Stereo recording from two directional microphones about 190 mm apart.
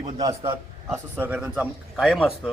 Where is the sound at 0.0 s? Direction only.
20° right (ahead or behind).